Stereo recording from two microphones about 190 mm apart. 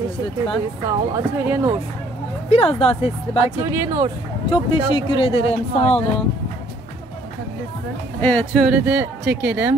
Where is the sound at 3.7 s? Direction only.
20° right (ahead or behind).